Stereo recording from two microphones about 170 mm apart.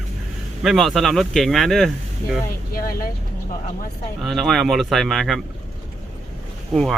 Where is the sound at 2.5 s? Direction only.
60° left (ahead or behind).